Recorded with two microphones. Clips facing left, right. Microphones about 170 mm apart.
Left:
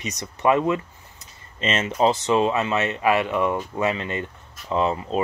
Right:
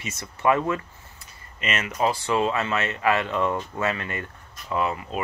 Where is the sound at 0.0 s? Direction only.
20° left (ahead or behind).